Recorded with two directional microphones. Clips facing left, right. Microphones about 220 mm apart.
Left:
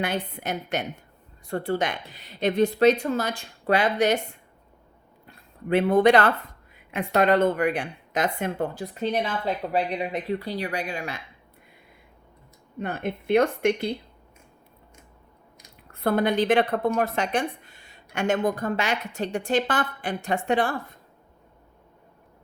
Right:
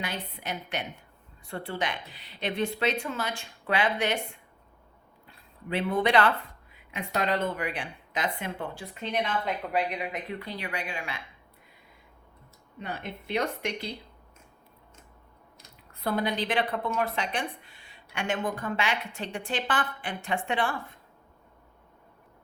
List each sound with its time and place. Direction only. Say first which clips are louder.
0.0 s a woman's voice: left 8 dB; 50° left (ahead or behind)
12.8 s speech: left 8 dB; 50° left (ahead or behind)
15.9 s speech: left 6 dB; 50° left (ahead or behind)